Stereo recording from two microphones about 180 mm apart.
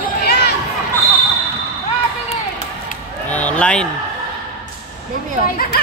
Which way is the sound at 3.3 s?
10° left (ahead or behind).